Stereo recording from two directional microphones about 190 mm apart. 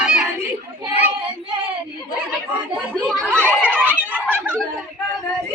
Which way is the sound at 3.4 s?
10° right (ahead or behind).